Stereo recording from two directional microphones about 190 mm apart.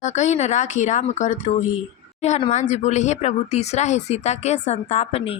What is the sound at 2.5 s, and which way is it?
Speech, 40° left (ahead or behind).